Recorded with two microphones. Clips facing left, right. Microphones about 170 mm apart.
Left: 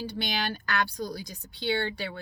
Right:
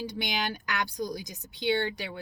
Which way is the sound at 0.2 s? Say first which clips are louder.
Left 1 dB; 15° right (ahead or behind).